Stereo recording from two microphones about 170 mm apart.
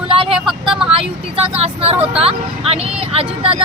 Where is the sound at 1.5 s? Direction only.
35° right (ahead or behind).